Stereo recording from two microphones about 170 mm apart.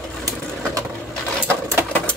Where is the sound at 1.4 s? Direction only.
15° right (ahead or behind).